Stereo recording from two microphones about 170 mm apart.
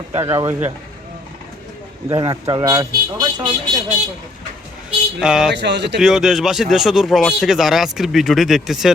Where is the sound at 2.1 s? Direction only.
25° right (ahead or behind).